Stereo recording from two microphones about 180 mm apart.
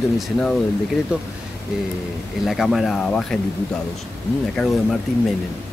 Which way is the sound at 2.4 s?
Centre (ahead or behind).